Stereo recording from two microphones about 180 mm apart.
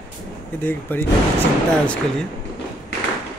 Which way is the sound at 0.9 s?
10° left (ahead or behind).